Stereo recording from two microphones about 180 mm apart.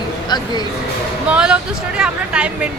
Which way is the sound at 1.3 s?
5° right (ahead or behind).